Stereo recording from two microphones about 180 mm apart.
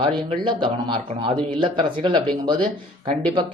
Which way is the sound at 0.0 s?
25° right (ahead or behind).